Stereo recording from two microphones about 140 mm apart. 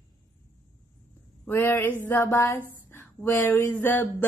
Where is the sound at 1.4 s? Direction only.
15° left (ahead or behind).